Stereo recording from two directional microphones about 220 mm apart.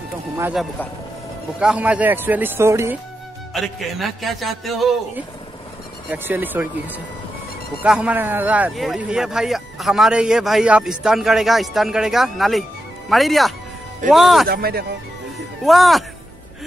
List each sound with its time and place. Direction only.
0.4 s speech: 5° right (ahead or behind)
3.6 s speech: centre (ahead or behind)
14.5 s speech: 45° right (ahead or behind)
15.6 s speech: centre (ahead or behind)